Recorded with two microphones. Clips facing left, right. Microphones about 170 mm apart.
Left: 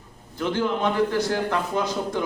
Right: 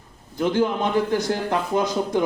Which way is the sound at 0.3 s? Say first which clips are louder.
Right 3 dB; 15° right (ahead or behind).